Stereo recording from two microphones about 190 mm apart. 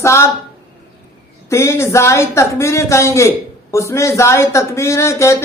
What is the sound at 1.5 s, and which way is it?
Speech, 15° left (ahead or behind).